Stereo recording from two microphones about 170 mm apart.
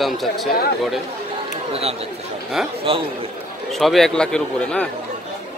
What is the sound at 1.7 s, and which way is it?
A man's voice, 35° right (ahead or behind).